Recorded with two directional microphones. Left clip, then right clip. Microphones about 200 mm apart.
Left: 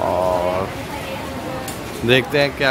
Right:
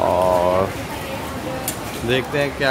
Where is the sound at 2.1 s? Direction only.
45° left (ahead or behind).